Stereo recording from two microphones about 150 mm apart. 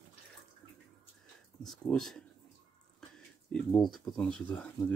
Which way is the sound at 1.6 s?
Centre (ahead or behind).